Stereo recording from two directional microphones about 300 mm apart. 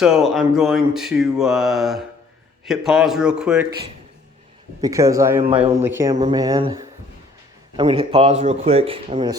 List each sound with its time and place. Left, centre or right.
0.0 s mantra: centre
4.8 s a man's voice: centre